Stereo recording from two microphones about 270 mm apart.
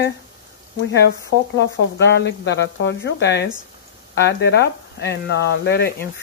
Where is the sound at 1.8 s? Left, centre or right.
Left.